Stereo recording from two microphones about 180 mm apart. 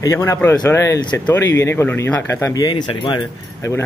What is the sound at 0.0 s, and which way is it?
Speech, 15° left (ahead or behind).